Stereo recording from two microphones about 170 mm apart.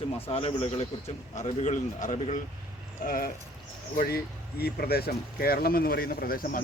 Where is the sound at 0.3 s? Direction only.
35° left (ahead or behind).